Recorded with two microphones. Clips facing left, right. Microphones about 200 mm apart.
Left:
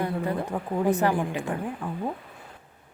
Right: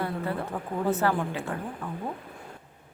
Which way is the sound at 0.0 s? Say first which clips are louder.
Left 3 dB; 15° left (ahead or behind).